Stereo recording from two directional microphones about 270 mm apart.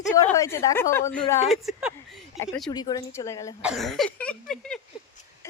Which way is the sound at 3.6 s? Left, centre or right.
Centre.